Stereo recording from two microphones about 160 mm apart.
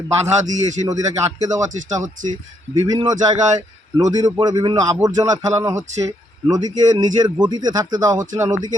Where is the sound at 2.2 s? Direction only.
55° right (ahead or behind).